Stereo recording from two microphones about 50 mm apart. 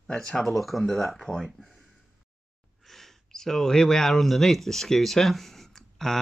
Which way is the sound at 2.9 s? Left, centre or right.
Centre.